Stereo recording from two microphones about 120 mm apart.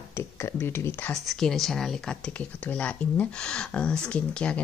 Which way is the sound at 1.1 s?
5° left (ahead or behind).